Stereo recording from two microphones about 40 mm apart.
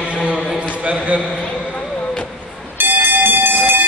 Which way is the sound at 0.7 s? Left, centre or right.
Right.